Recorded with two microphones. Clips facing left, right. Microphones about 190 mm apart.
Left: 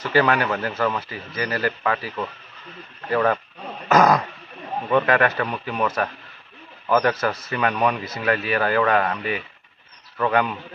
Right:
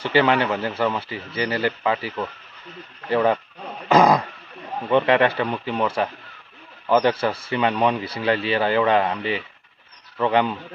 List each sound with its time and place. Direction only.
0.0 s speech: 25° right (ahead or behind)